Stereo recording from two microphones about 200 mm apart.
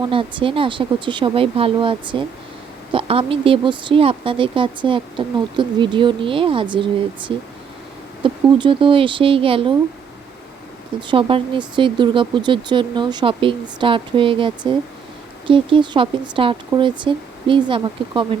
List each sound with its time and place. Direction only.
0.0 s speech: 25° right (ahead or behind)
11.0 s speech: 25° right (ahead or behind)